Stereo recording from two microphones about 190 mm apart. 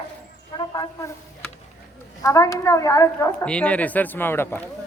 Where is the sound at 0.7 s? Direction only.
15° left (ahead or behind).